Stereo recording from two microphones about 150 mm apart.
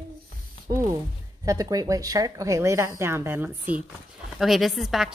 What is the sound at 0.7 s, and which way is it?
Speech, 20° right (ahead or behind).